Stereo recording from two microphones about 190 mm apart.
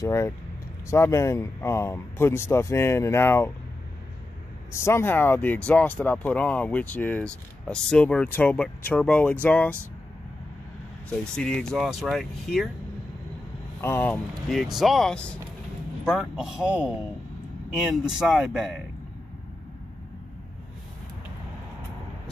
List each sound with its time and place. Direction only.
0.0 s speech: 15° left (ahead or behind)
4.7 s speech: 15° left (ahead or behind)
11.1 s speech: 5° left (ahead or behind)
13.7 s speech: 10° left (ahead or behind)
14.3 s speech: centre (ahead or behind)